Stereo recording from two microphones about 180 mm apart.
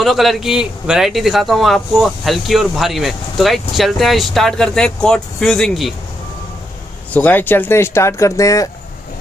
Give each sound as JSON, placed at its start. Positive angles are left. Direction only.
{"t": 0.0, "sound": "a man's voice", "side_deg": 0}
{"t": 7.1, "sound": "speech", "side_deg": 10}